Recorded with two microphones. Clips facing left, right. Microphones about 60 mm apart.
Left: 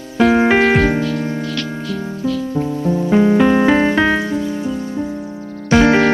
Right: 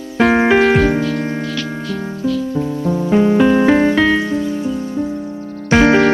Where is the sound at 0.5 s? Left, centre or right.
Centre.